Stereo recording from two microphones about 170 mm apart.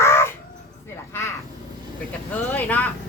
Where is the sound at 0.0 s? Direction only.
15° left (ahead or behind).